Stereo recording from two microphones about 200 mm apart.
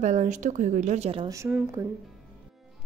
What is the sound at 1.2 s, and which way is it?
Speech, 15° right (ahead or behind).